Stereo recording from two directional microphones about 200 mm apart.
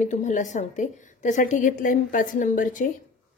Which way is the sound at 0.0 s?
35° left (ahead or behind).